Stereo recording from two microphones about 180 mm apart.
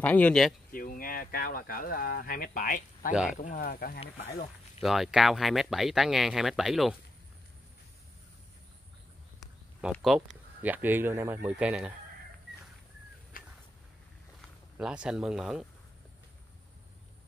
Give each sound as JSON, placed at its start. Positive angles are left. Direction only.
{"t": 0.0, "sound": "speech", "side_deg": 10}
{"t": 0.7, "sound": "speech", "side_deg": 50}
{"t": 4.0, "sound": "speech", "side_deg": 35}
{"t": 4.8, "sound": "speech", "side_deg": 0}
{"t": 9.4, "sound": "a sound", "side_deg": -5}
{"t": 9.9, "sound": "speech", "side_deg": 0}
{"t": 13.3, "sound": "a sound", "side_deg": 50}
{"t": 14.8, "sound": "speech", "side_deg": -5}